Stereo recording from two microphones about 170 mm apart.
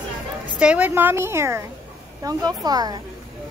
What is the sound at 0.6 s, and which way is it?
A woman's voice, 5° right (ahead or behind).